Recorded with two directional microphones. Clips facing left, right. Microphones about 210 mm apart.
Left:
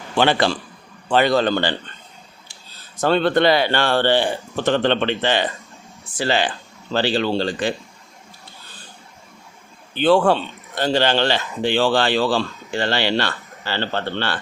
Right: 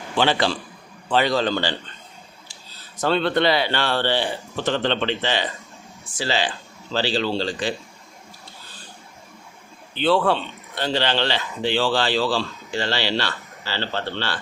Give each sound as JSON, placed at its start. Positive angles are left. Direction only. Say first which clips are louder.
{"t": 0.2, "sound": "speech", "louder": "left 3 dB", "side_deg": 55}
{"t": 3.0, "sound": "speech", "louder": "left 3 dB", "side_deg": 45}
{"t": 10.0, "sound": "speech", "louder": "left 4 dB", "side_deg": 45}